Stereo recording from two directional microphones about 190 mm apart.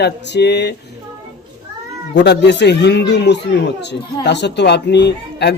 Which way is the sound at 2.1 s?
60° left (ahead or behind).